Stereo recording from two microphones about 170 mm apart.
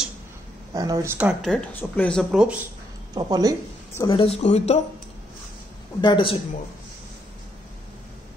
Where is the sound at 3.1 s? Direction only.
25° right (ahead or behind).